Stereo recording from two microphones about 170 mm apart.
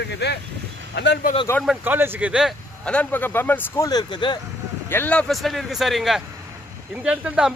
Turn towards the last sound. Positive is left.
turn(degrees=-5)  # may be behind; listen again after turning